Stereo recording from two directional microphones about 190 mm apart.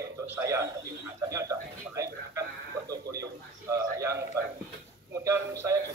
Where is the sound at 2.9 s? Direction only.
20° right (ahead or behind).